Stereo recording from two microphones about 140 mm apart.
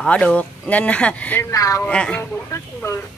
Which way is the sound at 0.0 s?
5° left (ahead or behind).